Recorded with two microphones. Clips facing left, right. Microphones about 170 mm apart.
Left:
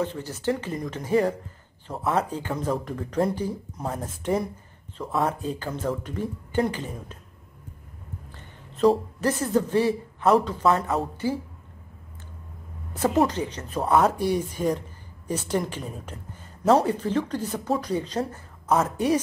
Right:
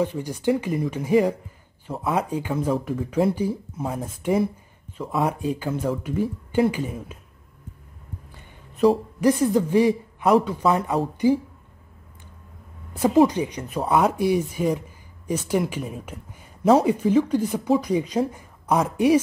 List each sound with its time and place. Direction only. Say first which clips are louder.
0.0 s speech: right 4 dB; 10° right (ahead or behind)
8.4 s a sound: right 2 dB; 10° right (ahead or behind)
9.2 s speech: right 7 dB; 10° right (ahead or behind)
11.2 s speech: right 9 dB; 15° right (ahead or behind)
13.0 s speech: right 5 dB; 10° right (ahead or behind)